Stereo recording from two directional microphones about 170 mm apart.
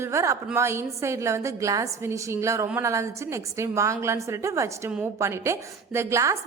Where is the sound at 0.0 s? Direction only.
15° right (ahead or behind).